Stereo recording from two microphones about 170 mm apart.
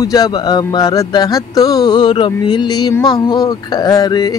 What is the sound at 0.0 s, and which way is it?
Music, 20° left (ahead or behind).